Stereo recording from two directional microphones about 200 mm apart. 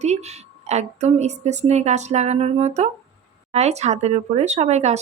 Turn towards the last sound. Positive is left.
turn(degrees=-35)  # may be behind; listen again after turning